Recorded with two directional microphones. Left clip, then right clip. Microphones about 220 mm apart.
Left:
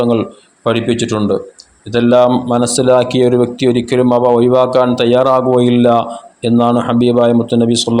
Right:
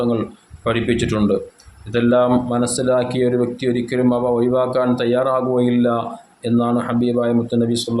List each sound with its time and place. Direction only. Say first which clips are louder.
0.6 s speech: left 5 dB; 20° left (ahead or behind)